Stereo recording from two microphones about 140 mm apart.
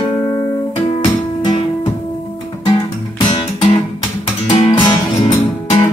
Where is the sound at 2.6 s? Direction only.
35° left (ahead or behind).